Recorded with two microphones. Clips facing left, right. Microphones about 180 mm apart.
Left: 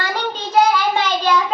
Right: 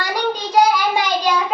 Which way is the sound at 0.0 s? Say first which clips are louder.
Right 2 dB; 15° right (ahead or behind).